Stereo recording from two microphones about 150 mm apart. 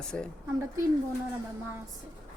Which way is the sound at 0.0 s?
5° left (ahead or behind).